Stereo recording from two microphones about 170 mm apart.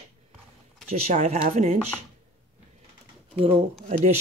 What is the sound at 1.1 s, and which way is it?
Speech, 40° right (ahead or behind).